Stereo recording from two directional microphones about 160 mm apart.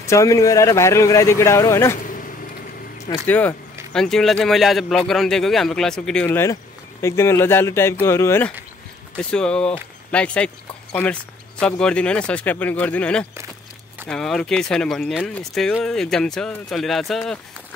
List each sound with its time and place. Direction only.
0.0 s speech: 20° left (ahead or behind)
3.3 s speech: 10° left (ahead or behind)
6.2 s speech: 15° left (ahead or behind); by 17.4 s centre (ahead or behind)